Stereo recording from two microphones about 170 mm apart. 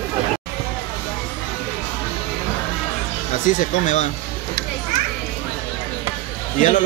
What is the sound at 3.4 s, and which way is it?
Speech, 50° left (ahead or behind).